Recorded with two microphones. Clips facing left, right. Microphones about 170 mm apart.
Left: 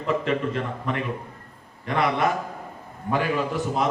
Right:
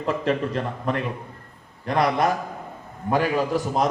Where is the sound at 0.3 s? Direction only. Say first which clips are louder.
Right 1 dB; 35° right (ahead or behind).